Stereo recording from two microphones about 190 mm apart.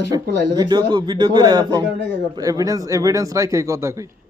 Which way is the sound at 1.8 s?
65° right (ahead or behind).